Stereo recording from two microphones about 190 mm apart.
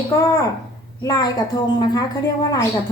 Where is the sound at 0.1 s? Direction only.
15° left (ahead or behind).